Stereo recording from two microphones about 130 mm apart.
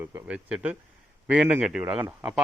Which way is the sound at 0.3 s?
10° right (ahead or behind).